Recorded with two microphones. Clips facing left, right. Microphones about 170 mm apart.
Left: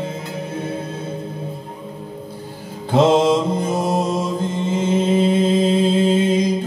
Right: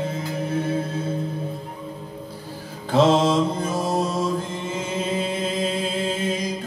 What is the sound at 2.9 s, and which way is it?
Mantra, 20° left (ahead or behind).